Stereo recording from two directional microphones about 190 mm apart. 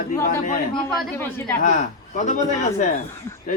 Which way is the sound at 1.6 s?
40° left (ahead or behind).